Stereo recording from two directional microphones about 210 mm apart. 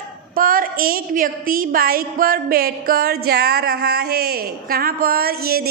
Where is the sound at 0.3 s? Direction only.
45° right (ahead or behind).